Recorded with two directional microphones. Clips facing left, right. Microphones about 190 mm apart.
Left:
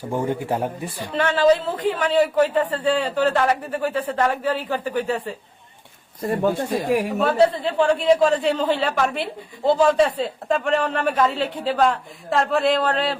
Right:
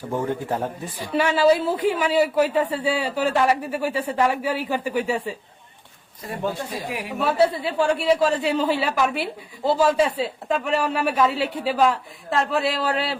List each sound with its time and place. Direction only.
0.1 s speech: 15° left (ahead or behind)
1.0 s a man's voice: 10° right (ahead or behind)
6.2 s speech: 50° left (ahead or behind)
7.2 s a man's voice: 5° right (ahead or behind)